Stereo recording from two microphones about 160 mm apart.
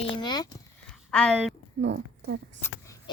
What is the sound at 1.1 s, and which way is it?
Speech, 5° left (ahead or behind).